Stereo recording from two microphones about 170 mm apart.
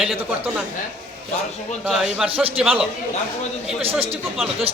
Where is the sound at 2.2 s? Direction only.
35° right (ahead or behind).